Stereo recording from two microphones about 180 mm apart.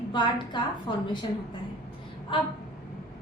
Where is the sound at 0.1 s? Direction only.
25° left (ahead or behind).